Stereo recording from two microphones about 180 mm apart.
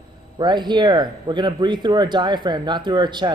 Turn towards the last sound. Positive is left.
turn(degrees=-25)  # may be behind; listen again after turning